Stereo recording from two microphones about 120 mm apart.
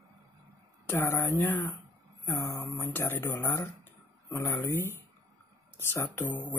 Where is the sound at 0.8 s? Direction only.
20° left (ahead or behind).